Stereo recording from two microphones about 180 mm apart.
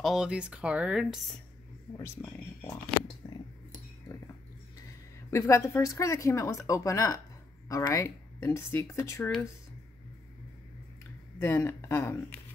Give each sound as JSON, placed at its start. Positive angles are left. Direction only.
{"t": 0.0, "sound": "speech", "side_deg": -5}
{"t": 2.2, "sound": "speech", "side_deg": 15}
{"t": 3.2, "sound": "a sound", "side_deg": 25}
{"t": 5.3, "sound": "speech", "side_deg": 15}
{"t": 11.3, "sound": "speech", "side_deg": 15}